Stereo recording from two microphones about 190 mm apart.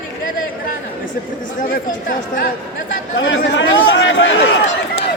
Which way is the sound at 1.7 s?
45° left (ahead or behind).